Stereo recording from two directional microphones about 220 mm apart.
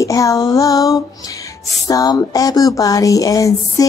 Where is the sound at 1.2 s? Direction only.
15° left (ahead or behind).